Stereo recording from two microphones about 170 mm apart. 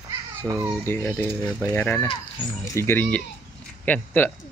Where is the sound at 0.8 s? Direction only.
10° left (ahead or behind).